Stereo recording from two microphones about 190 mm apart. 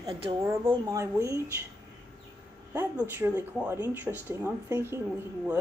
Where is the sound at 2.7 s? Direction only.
10° right (ahead or behind).